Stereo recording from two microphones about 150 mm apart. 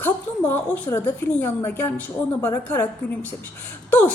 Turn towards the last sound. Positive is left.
turn(degrees=10)  # may be behind; listen again after turning